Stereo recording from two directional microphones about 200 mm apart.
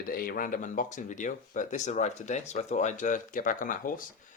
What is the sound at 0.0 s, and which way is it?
Speech, 45° left (ahead or behind).